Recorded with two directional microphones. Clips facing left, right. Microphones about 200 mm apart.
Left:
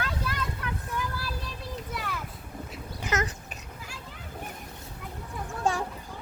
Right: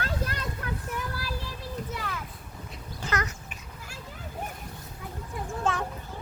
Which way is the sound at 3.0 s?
20° left (ahead or behind).